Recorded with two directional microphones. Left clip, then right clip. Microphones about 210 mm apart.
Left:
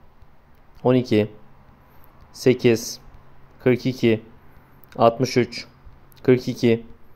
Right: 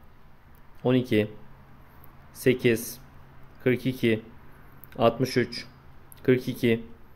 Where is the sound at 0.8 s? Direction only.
15° left (ahead or behind).